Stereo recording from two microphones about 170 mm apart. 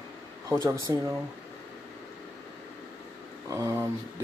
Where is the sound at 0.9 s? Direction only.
20° right (ahead or behind).